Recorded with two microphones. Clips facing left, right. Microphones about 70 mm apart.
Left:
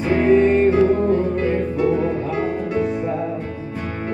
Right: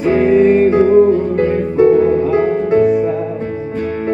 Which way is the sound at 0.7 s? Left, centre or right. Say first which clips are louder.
Right 6 dB; right.